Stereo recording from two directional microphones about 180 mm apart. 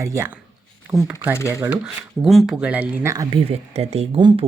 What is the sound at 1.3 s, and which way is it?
Speech, 15° left (ahead or behind).